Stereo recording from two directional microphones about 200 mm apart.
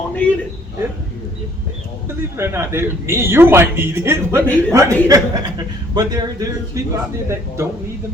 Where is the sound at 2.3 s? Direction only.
10° right (ahead or behind).